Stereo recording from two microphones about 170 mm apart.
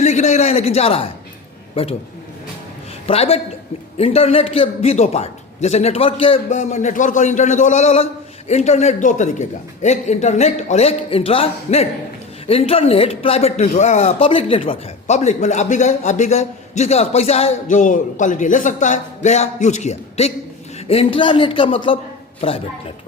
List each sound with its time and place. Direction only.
0.0 s a man's voice: 40° left (ahead or behind)
3.1 s a man's voice: 35° left (ahead or behind)